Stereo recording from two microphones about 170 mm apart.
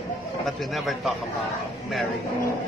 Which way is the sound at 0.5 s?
Centre (ahead or behind).